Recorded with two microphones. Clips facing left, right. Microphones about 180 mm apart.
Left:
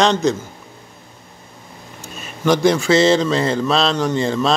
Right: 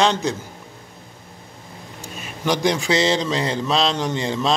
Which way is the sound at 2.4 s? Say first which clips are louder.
Left 5 dB; 15° right (ahead or behind).